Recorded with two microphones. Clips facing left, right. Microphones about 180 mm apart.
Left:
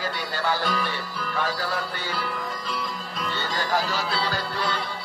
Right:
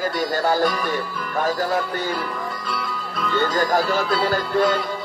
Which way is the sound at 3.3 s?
45° right (ahead or behind).